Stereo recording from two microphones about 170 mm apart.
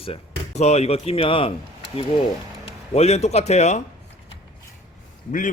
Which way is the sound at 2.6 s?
40° left (ahead or behind).